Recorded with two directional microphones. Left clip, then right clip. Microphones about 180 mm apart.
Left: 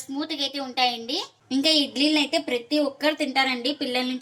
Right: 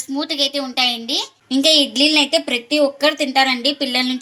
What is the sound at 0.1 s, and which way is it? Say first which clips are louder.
A woman's voice: right 8 dB; 40° right (ahead or behind).